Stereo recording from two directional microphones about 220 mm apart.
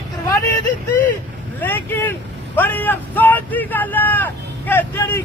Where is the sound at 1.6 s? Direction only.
10° left (ahead or behind).